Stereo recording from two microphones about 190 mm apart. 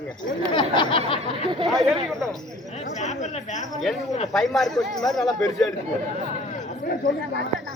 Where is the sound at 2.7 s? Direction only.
35° left (ahead or behind).